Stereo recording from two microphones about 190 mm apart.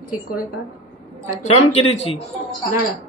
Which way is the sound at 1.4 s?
35° left (ahead or behind).